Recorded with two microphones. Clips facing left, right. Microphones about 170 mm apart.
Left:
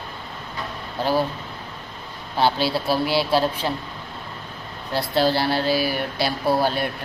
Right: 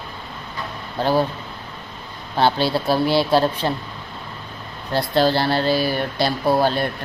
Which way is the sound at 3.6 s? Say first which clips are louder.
Right 3 dB; 45° right (ahead or behind).